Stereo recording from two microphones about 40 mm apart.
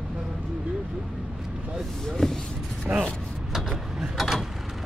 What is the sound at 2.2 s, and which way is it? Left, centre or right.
Vehicle, centre.